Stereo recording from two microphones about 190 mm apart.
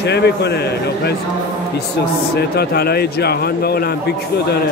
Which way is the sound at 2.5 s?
55° left (ahead or behind).